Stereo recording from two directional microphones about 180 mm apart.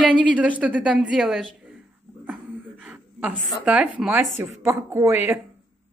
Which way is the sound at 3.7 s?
5° right (ahead or behind).